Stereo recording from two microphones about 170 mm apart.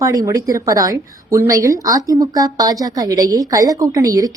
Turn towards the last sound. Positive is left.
turn(degrees=-20)  # may be behind; listen again after turning